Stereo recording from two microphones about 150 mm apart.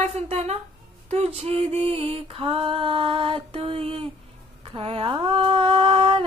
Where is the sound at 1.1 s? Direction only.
45° right (ahead or behind).